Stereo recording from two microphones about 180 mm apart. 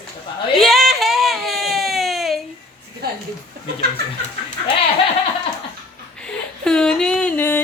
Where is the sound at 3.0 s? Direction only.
60° right (ahead or behind).